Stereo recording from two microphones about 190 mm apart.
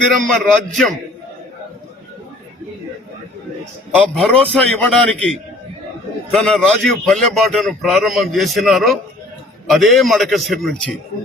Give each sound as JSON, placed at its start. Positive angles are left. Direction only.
{"t": 0.2, "sound": "a man's voice", "side_deg": 0}
{"t": 4.1, "sound": "a man's voice", "side_deg": 0}